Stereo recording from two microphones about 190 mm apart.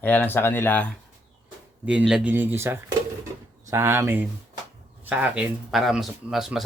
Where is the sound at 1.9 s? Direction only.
5° right (ahead or behind).